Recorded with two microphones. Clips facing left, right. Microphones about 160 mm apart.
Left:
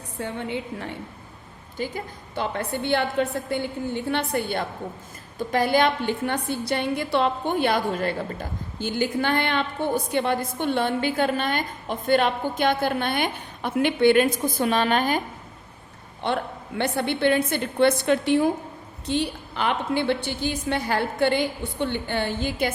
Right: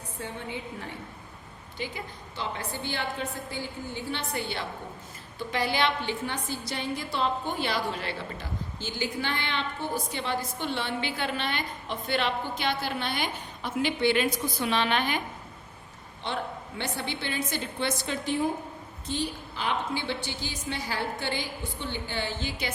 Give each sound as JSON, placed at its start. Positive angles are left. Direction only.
{"t": 0.2, "sound": "a woman's voice", "side_deg": 70}
{"t": 1.8, "sound": "a woman's voice", "side_deg": 45}
{"t": 2.3, "sound": "a woman's voice", "side_deg": 55}
{"t": 16.2, "sound": "a woman's voice", "side_deg": 60}